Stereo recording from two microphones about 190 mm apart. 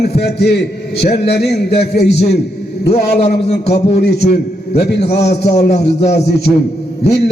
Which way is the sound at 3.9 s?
60° left (ahead or behind).